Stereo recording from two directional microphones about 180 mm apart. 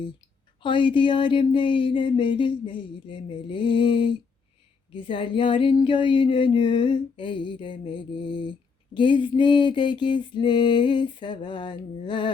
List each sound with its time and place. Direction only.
0.6 s speech: 25° left (ahead or behind)